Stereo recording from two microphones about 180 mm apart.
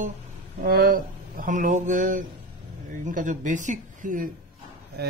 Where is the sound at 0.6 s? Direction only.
55° right (ahead or behind).